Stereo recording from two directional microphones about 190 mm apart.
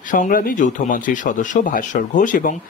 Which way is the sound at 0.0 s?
45° left (ahead or behind).